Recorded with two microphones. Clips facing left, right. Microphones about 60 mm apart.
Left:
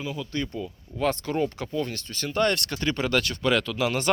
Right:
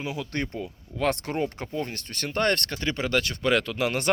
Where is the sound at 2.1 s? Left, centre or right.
Right.